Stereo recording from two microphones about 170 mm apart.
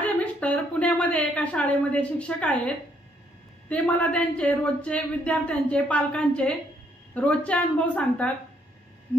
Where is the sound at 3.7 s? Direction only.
10° left (ahead or behind).